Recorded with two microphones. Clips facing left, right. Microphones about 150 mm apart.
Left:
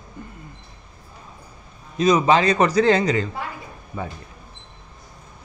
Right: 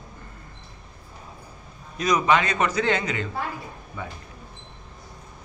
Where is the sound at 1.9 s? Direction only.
25° left (ahead or behind).